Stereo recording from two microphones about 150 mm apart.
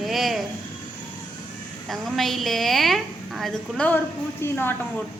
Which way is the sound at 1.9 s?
Centre (ahead or behind).